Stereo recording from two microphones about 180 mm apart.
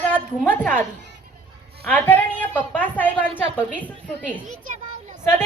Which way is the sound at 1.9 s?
10° left (ahead or behind).